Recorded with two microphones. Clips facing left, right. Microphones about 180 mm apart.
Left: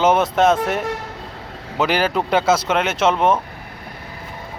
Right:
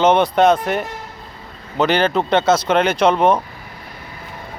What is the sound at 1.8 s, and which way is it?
Speech, 5° left (ahead or behind).